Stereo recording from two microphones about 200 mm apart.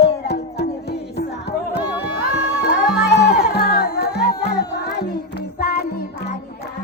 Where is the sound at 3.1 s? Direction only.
55° left (ahead or behind).